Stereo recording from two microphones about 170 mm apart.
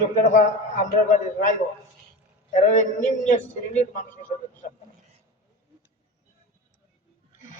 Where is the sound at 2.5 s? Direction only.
45° left (ahead or behind).